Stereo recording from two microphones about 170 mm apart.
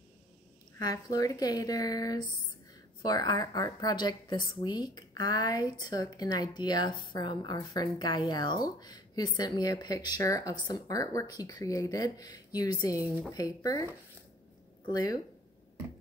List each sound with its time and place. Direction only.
0.7 s a woman's voice: 20° left (ahead or behind)
14.9 s a woman's voice: 25° left (ahead or behind)